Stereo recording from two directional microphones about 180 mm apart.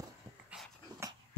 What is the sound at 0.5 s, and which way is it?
Dog, 5° right (ahead or behind).